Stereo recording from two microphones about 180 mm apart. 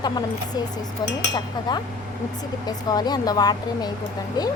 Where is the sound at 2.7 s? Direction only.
20° left (ahead or behind).